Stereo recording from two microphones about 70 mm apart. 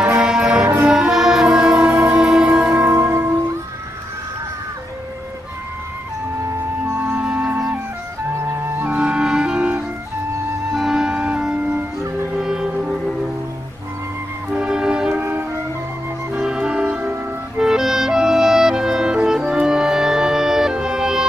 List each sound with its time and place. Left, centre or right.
0.2 s music: centre
2.9 s music: right
7.0 s music: right
7.2 s music: centre
8.4 s music: right
8.9 s clarinet: centre
10.7 s music: centre
12.4 s music: centre
14.5 s music: centre
15.1 s music: right
16.3 s music: centre